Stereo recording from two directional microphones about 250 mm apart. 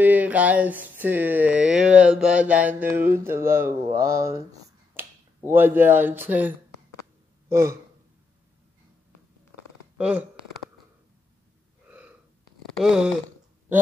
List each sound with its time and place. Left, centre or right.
0.0 s a sound: centre
4.9 s speech: centre
9.9 s speech: centre
12.7 s speech: centre